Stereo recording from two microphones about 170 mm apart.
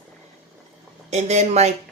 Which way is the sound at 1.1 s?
40° right (ahead or behind).